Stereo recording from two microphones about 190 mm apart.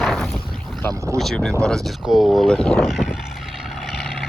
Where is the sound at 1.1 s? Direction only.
5° left (ahead or behind).